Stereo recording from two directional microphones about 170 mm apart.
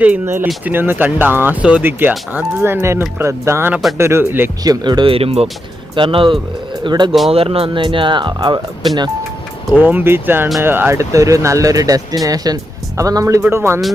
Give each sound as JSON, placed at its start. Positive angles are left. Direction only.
{"t": 0.0, "sound": "speech", "side_deg": -10}
{"t": 9.7, "sound": "speech", "side_deg": -10}